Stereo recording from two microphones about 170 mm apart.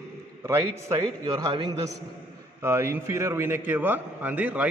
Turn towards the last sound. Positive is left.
turn(degrees=-10)  # may be behind; listen again after turning